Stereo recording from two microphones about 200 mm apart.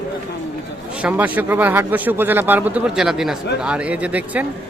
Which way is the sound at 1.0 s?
10° right (ahead or behind).